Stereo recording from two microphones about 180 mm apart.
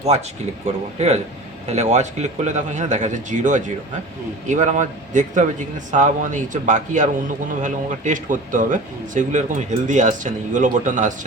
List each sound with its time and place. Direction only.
0.6 s a man's voice: 35° right (ahead or behind)